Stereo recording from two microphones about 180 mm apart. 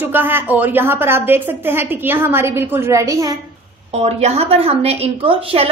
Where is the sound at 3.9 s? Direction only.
35° right (ahead or behind).